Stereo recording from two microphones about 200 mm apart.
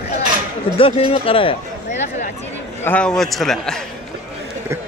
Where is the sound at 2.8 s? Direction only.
5° left (ahead or behind).